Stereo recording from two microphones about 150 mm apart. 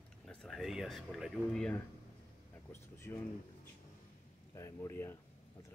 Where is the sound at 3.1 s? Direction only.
15° left (ahead or behind).